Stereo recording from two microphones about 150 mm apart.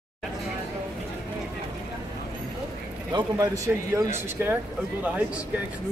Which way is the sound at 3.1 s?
25° right (ahead or behind).